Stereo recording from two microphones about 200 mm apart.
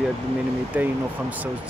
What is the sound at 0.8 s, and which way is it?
Speech, 10° right (ahead or behind).